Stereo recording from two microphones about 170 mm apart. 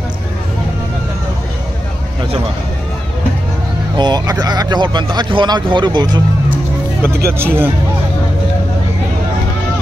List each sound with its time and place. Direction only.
3.9 s speech: 25° right (ahead or behind)
7.2 s speech: 15° right (ahead or behind)